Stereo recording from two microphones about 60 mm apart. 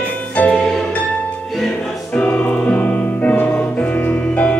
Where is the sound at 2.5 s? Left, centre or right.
Left.